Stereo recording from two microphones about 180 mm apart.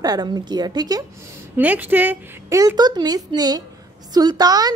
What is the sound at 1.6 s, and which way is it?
A woman's voice, 10° right (ahead or behind).